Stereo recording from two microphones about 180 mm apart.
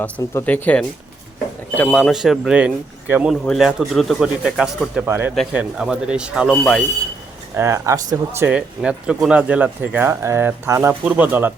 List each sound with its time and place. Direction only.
0.0 s speech: 10° left (ahead or behind)
5.0 s speech: 15° right (ahead or behind)
7.5 s speech: 15° right (ahead or behind)